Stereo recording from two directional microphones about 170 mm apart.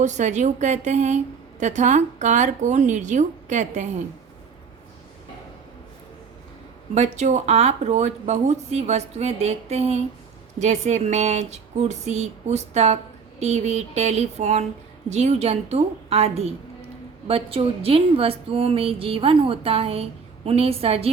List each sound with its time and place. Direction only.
0.0 s a woman's voice: 45° right (ahead or behind)
6.9 s a woman's voice: 40° right (ahead or behind)